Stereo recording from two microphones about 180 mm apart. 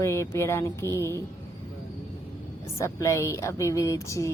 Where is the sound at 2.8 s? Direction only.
15° left (ahead or behind).